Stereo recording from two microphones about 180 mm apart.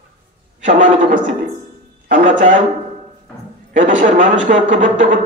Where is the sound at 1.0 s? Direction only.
45° right (ahead or behind).